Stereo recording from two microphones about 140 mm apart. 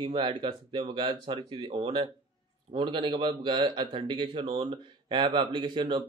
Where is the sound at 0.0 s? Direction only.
35° right (ahead or behind).